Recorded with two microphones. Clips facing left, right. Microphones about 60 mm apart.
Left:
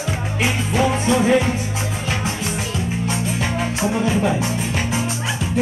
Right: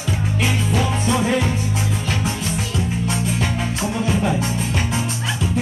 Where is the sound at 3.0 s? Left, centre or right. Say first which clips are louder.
Even; centre.